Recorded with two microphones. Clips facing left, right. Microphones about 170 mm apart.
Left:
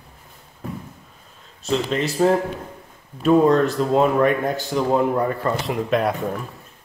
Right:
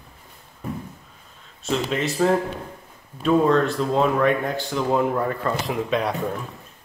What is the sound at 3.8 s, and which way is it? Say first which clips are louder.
Speech: left 3 dB; 5° left (ahead or behind).